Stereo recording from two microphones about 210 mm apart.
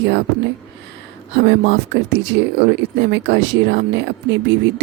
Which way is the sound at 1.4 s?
60° right (ahead or behind).